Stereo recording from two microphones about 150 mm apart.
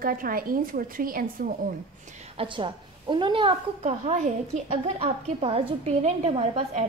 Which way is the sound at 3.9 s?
50° right (ahead or behind).